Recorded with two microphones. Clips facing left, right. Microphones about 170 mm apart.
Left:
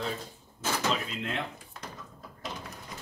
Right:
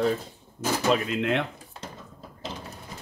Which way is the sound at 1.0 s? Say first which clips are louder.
Right 9 dB; 65° right (ahead or behind).